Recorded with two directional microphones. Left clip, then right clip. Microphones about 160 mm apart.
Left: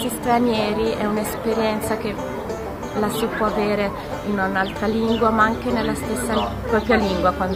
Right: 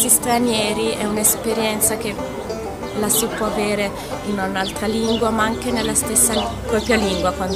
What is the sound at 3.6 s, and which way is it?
A woman's voice, 10° right (ahead or behind).